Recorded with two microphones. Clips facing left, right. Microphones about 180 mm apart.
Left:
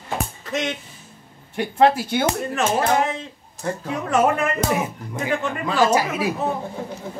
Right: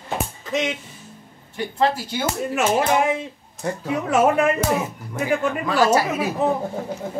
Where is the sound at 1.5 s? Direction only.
60° left (ahead or behind).